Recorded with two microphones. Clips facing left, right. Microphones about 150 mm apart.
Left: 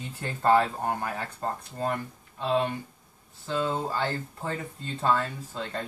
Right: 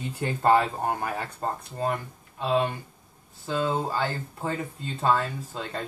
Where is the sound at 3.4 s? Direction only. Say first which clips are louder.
Right 2 dB; 15° right (ahead or behind).